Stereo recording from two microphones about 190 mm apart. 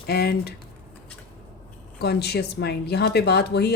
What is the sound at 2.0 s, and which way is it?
A woman's voice, 60° left (ahead or behind).